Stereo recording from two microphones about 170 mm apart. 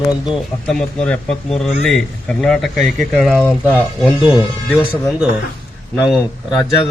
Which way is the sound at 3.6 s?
10° right (ahead or behind).